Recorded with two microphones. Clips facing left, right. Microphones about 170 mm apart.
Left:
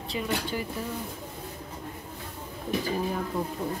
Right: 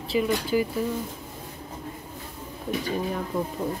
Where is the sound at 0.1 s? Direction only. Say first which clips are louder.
Right 9 dB; 10° right (ahead or behind).